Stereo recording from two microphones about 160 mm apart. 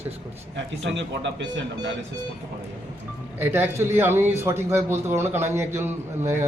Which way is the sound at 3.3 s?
15° right (ahead or behind).